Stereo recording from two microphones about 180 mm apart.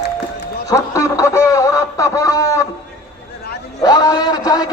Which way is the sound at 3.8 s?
20° left (ahead or behind).